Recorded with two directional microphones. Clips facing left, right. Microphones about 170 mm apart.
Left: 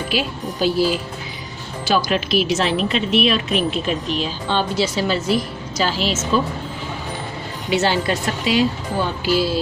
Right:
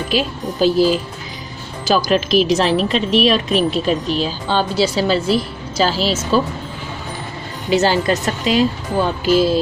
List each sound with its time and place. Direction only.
0.1 s a woman's voice: 40° right (ahead or behind)
7.7 s a woman's voice: 40° right (ahead or behind)
9.2 s music: 45° right (ahead or behind)